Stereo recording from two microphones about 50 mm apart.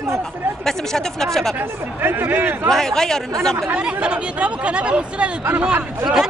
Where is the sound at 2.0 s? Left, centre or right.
Right.